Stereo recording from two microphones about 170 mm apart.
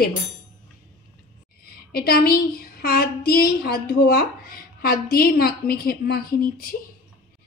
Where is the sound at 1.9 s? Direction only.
65° left (ahead or behind).